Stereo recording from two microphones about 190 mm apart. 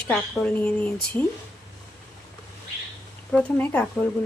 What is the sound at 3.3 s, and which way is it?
Speech, 5° left (ahead or behind).